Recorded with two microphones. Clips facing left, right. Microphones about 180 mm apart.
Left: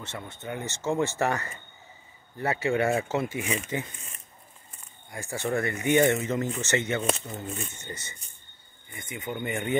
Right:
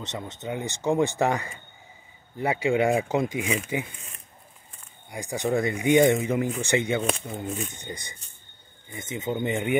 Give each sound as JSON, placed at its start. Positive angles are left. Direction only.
{"t": 0.0, "sound": "speech", "side_deg": -20}
{"t": 5.1, "sound": "speech", "side_deg": -15}